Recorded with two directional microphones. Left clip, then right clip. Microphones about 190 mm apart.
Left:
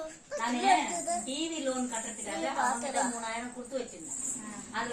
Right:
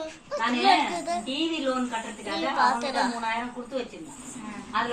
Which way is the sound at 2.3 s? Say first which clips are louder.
Right 7 dB; 15° left (ahead or behind).